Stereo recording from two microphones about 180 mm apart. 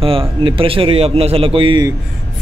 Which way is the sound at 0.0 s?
30° right (ahead or behind).